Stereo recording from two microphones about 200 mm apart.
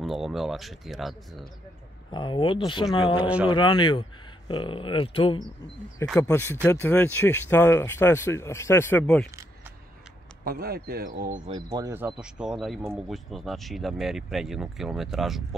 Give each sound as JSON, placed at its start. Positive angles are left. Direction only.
{"t": 0.0, "sound": "speech", "side_deg": 0}
{"t": 2.1, "sound": "speech", "side_deg": 25}
{"t": 6.2, "sound": "speech", "side_deg": 10}
{"t": 10.4, "sound": "speech", "side_deg": -50}
{"t": 11.5, "sound": "speech", "side_deg": -20}